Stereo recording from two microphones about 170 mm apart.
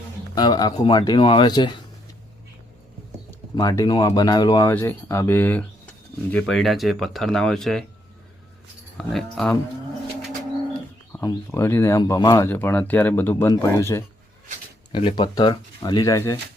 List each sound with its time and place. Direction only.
0.3 s speech: 25° left (ahead or behind)
3.5 s speech: 20° left (ahead or behind); by 7.9 s centre (ahead or behind)
9.0 s speech: 5° left (ahead or behind)
11.2 s speech: 20° left (ahead or behind)
12.5 s speech: 10° left (ahead or behind)
14.9 s speech: 30° left (ahead or behind)